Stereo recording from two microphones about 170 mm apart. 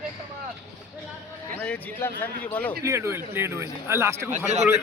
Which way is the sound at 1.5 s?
10° left (ahead or behind).